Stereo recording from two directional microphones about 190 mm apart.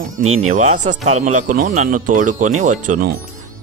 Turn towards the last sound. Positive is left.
turn(degrees=-40)  # may be behind; listen again after turning